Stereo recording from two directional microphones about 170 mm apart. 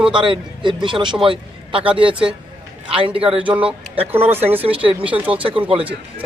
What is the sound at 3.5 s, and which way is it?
Speech, 10° right (ahead or behind).